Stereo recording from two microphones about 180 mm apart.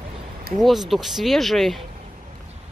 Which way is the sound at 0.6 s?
Centre (ahead or behind).